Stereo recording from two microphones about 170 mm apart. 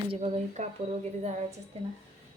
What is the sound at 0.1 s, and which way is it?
Speech, 40° right (ahead or behind).